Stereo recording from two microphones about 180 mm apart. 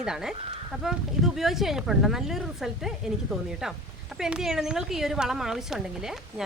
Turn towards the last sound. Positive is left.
turn(degrees=-5)  # may be behind; listen again after turning